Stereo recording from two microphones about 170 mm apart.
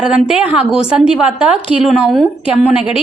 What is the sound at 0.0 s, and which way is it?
A woman's voice, 5° right (ahead or behind).